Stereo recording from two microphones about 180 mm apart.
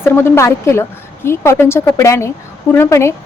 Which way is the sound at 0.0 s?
15° left (ahead or behind).